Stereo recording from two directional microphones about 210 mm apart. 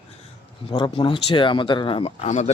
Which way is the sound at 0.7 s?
20° left (ahead or behind).